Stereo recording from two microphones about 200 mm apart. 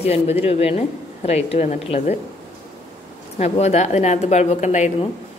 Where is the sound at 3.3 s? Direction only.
35° left (ahead or behind).